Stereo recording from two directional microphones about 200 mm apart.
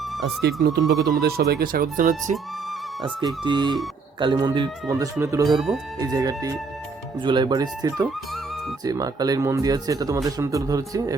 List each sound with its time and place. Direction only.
0.4 s speech: 55° right (ahead or behind); by 2.3 s 40° right (ahead or behind)
3.2 s speech: 20° right (ahead or behind)
5.5 s speech: centre (ahead or behind)
6.0 s speech: 20° right (ahead or behind)